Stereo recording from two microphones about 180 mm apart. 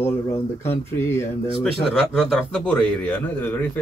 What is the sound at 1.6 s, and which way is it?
Speech, 5° left (ahead or behind).